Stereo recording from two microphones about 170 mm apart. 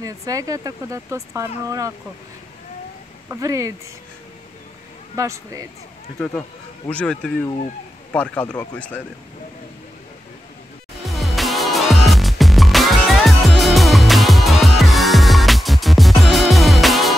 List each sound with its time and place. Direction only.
0.0 s speech: 20° right (ahead or behind)
3.3 s speech: 20° right (ahead or behind)
5.1 s speech: 20° right (ahead or behind)
6.1 s speech: centre (ahead or behind)
11.1 s music: centre (ahead or behind)